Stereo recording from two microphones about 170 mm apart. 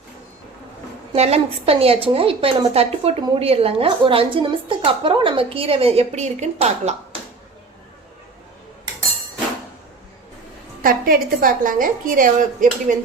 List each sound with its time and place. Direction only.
1.1 s a woman's voice: 35° right (ahead or behind)
10.8 s a woman's voice: 55° right (ahead or behind)